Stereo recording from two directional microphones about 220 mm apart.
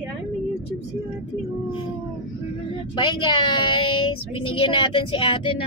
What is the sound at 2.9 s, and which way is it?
Speech, 20° left (ahead or behind).